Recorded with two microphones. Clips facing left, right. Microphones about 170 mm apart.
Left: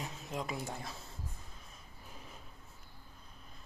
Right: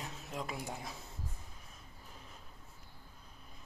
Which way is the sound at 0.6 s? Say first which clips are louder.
Left 1 dB; 15° right (ahead or behind).